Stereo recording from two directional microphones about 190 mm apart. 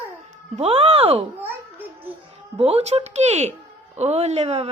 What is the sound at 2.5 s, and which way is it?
Speech, 30° right (ahead or behind).